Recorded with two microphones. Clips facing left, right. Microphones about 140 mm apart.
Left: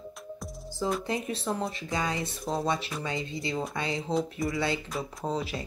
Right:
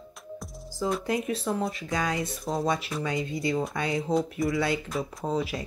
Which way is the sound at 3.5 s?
Centre (ahead or behind).